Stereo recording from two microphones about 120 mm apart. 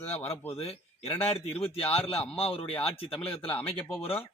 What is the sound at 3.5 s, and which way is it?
Speech, 10° left (ahead or behind).